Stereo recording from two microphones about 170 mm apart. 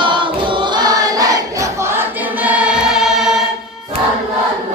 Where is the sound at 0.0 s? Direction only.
30° right (ahead or behind); by 3.2 s 5° right (ahead or behind).